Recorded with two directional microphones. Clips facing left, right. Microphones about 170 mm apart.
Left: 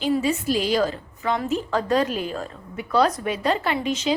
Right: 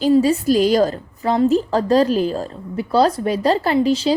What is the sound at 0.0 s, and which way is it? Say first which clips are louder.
A woman's voice: right 7 dB; 35° right (ahead or behind).